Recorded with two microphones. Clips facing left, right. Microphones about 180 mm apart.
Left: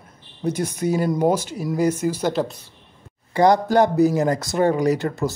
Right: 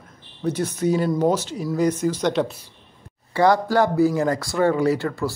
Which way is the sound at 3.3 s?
20° left (ahead or behind).